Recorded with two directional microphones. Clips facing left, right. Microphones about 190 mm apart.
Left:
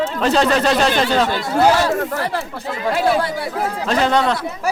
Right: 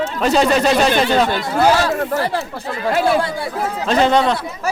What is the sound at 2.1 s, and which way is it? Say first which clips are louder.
Speech: right 3 dB; 30° right (ahead or behind).